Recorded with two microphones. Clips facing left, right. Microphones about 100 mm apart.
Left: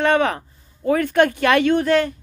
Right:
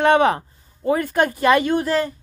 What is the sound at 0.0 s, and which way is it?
Speech, 20° right (ahead or behind).